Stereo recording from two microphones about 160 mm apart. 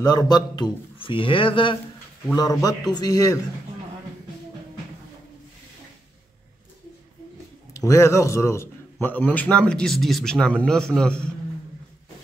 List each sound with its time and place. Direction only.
0.0 s a man's voice: 25° left (ahead or behind)
7.7 s a man's voice: 20° left (ahead or behind)